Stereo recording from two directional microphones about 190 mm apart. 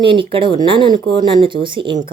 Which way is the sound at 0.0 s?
25° right (ahead or behind).